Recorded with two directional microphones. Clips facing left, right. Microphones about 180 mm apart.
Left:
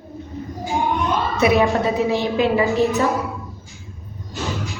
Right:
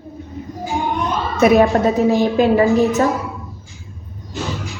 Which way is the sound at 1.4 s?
45° right (ahead or behind).